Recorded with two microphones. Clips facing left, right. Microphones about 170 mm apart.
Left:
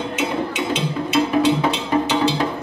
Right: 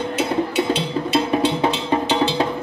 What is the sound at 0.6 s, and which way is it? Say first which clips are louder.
Music: right 2 dB; 35° right (ahead or behind).